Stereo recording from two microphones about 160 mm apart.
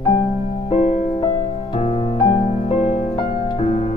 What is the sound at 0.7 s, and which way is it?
Music, 45° left (ahead or behind).